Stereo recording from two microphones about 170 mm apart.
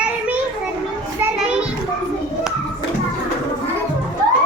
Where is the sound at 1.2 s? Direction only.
5° right (ahead or behind).